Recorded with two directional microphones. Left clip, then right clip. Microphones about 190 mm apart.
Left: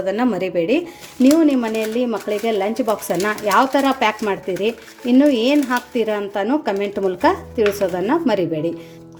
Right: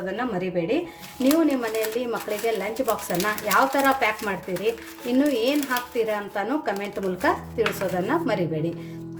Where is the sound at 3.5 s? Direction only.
35° left (ahead or behind).